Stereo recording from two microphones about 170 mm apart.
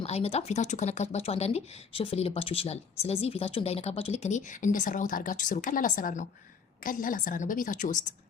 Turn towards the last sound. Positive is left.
turn(degrees=50)  # may be behind; listen again after turning